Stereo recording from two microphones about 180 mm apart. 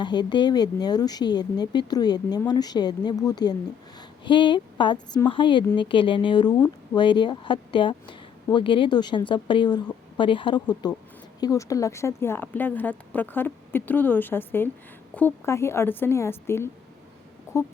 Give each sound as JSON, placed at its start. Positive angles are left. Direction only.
{"t": 0.0, "sound": "a woman's voice", "side_deg": 25}